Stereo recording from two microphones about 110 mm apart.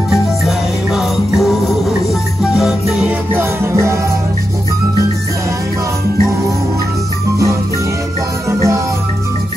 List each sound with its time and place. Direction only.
0.1 s music: centre (ahead or behind)
3.3 s music: 25° right (ahead or behind)
8.5 s music: 25° right (ahead or behind)